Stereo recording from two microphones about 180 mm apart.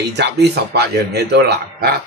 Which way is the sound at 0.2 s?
65° right (ahead or behind).